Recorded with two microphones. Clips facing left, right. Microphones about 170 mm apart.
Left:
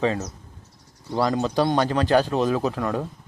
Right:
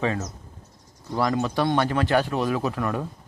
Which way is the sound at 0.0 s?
25° left (ahead or behind).